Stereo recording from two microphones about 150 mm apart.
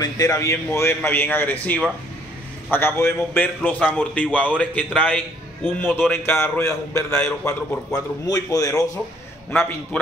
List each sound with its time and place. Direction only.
0.0 s a man's voice: 25° left (ahead or behind)